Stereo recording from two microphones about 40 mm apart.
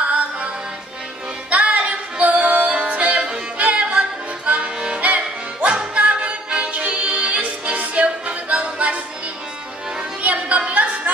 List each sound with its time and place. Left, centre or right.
0.0 s music: right
1.5 s music: right
10.2 s music: right